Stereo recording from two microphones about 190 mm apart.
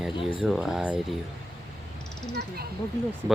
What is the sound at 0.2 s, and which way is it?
Speech, 25° left (ahead or behind).